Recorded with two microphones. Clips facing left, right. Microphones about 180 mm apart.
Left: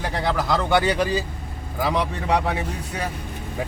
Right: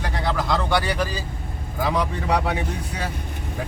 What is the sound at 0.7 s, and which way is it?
Speech, 20° left (ahead or behind).